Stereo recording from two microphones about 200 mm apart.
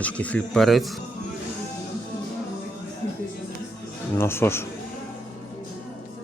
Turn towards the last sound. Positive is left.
turn(degrees=10)  # may be behind; listen again after turning